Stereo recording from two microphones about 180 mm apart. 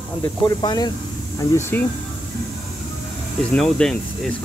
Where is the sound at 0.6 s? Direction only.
25° left (ahead or behind).